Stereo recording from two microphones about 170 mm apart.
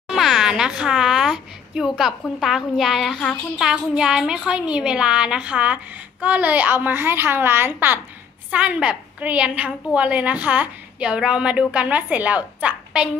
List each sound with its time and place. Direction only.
0.1 s a child's voice: centre (ahead or behind)